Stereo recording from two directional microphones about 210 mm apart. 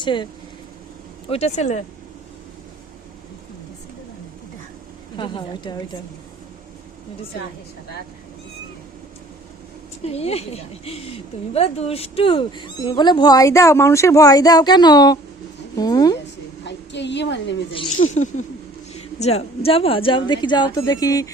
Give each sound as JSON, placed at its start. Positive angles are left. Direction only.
{"t": 0.0, "sound": "speech", "side_deg": 20}
{"t": 1.3, "sound": "speech", "side_deg": 30}
{"t": 5.1, "sound": "speech", "side_deg": 25}
{"t": 10.0, "sound": "speech", "side_deg": 30}
{"t": 16.6, "sound": "a woman's voice", "side_deg": 55}
{"t": 17.8, "sound": "speech", "side_deg": 80}
{"t": 18.1, "sound": "speech", "side_deg": 35}